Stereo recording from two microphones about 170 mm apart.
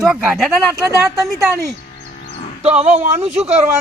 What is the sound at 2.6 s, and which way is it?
Speech, 40° right (ahead or behind).